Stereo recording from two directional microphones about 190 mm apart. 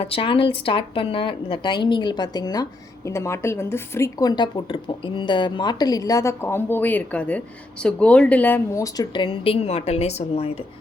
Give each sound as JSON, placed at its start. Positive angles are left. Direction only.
{"t": 0.0, "sound": "a woman's voice", "side_deg": 30}